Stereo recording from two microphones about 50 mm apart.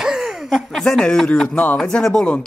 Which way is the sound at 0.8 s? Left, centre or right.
Centre.